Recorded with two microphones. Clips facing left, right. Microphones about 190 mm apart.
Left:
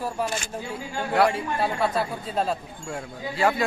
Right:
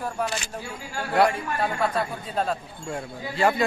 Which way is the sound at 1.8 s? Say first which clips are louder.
Left 1 dB; 5° left (ahead or behind).